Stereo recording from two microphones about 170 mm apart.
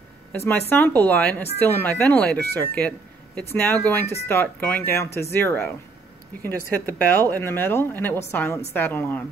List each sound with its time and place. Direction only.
0.3 s speech: 10° left (ahead or behind)
6.9 s speech: 10° left (ahead or behind)